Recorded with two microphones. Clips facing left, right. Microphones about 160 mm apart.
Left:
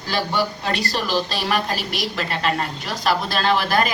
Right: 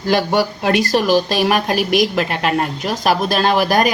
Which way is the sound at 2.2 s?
55° right (ahead or behind).